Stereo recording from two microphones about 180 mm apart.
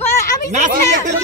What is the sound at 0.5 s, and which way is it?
Speech, 45° right (ahead or behind).